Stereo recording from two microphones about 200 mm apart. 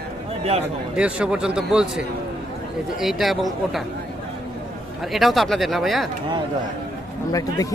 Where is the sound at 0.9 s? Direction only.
5° right (ahead or behind).